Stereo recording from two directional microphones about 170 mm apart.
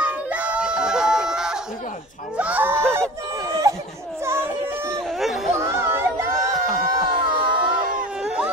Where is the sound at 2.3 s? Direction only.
10° right (ahead or behind).